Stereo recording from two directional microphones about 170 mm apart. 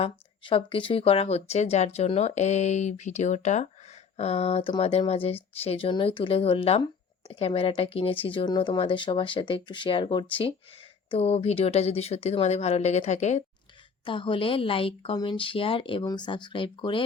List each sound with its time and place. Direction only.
0.0 s speech: 30° left (ahead or behind)
14.0 s speech: 30° left (ahead or behind)